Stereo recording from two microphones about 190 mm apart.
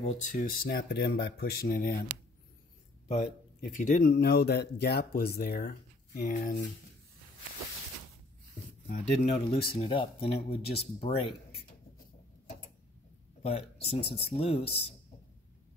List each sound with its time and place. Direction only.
0.0 s speech: 40° left (ahead or behind)
3.6 s speech: 45° left (ahead or behind)
8.8 s speech: 35° left (ahead or behind)
13.4 s speech: 30° left (ahead or behind)